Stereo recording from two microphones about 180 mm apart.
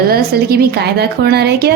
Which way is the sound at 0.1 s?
60° right (ahead or behind).